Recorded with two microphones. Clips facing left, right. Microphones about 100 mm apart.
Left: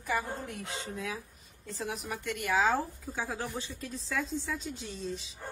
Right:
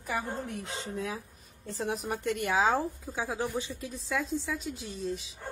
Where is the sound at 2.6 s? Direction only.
15° right (ahead or behind).